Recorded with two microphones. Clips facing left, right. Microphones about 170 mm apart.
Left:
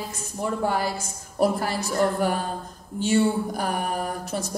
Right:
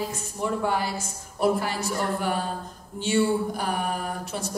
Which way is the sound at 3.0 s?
40° left (ahead or behind).